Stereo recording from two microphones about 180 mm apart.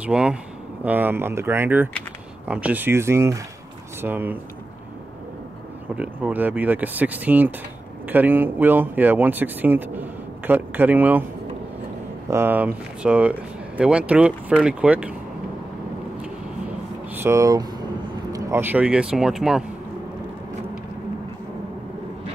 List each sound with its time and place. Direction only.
0.0 s speech: 5° right (ahead or behind)
5.9 s speech: 10° right (ahead or behind)
12.3 s speech: 10° right (ahead or behind)
17.1 s speech: 15° right (ahead or behind)